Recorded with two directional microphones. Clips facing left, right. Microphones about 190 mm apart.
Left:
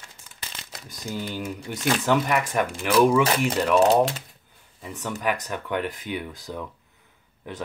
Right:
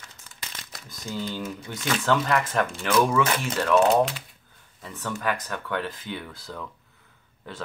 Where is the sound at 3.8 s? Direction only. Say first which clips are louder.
Left 3 dB; 40° left (ahead or behind).